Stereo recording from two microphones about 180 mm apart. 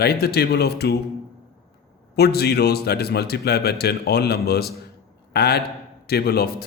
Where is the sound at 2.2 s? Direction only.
60° left (ahead or behind).